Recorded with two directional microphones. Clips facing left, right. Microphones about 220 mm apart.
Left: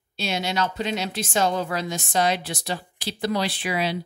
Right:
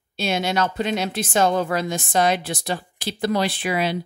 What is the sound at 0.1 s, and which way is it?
Speech, 55° right (ahead or behind).